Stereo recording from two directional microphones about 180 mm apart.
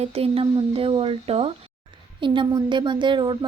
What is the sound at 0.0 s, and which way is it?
Speech, 35° right (ahead or behind).